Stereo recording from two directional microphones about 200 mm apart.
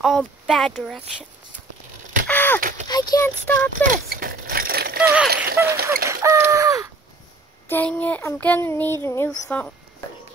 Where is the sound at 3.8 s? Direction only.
45° right (ahead or behind).